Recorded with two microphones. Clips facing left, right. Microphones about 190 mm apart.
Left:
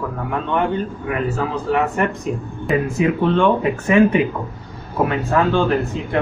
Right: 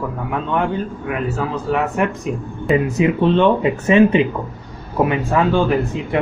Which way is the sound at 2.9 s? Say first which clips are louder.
Right 2 dB; 20° right (ahead or behind).